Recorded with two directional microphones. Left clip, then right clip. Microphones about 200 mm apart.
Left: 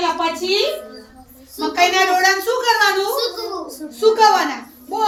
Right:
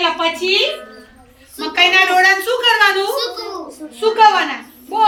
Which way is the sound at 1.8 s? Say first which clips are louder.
Right 4 dB; 15° left (ahead or behind).